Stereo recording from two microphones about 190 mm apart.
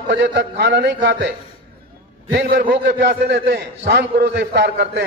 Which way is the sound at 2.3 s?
60° right (ahead or behind).